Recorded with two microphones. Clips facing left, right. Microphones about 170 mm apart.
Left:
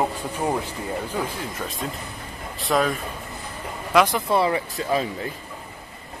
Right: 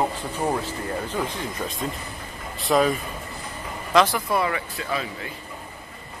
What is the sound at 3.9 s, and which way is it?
Speech, 20° left (ahead or behind).